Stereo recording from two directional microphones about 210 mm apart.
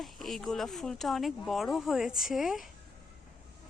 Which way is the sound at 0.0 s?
Centre (ahead or behind).